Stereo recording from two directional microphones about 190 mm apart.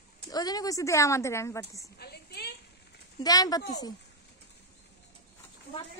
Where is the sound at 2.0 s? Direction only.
60° left (ahead or behind).